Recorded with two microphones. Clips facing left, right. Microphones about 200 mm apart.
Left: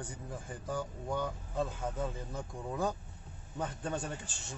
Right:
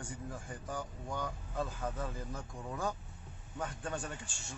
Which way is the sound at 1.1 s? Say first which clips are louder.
Left 4 dB; 25° left (ahead or behind).